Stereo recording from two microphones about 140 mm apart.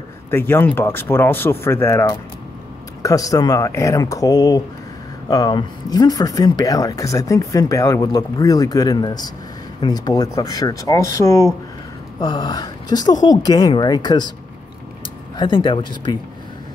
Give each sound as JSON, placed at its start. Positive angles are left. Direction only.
{"t": 0.3, "sound": "speech", "side_deg": 15}
{"t": 15.3, "sound": "speech", "side_deg": 35}